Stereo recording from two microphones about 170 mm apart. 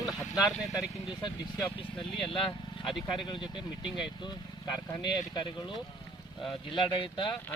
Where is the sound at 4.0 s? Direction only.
25° left (ahead or behind).